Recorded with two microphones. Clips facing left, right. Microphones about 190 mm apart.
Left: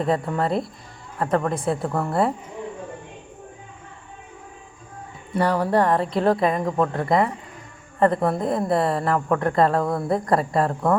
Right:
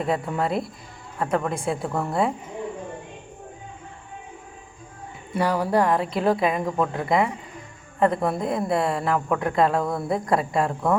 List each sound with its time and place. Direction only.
0.0 s a woman's voice: 5° right (ahead or behind)
5.3 s a woman's voice: 5° right (ahead or behind)